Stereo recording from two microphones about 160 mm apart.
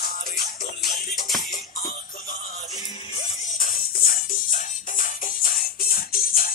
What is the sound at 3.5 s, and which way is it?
Music, 60° left (ahead or behind).